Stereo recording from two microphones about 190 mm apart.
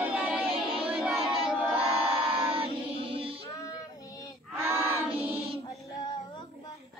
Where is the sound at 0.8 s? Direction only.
5° right (ahead or behind).